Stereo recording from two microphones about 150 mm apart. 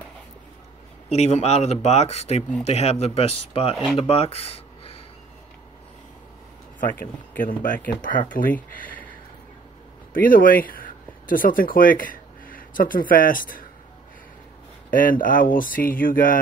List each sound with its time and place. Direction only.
1.1 s speech: 45° left (ahead or behind)
6.8 s speech: 65° left (ahead or behind)
10.1 s speech: 70° left (ahead or behind)
14.9 s speech: 70° left (ahead or behind)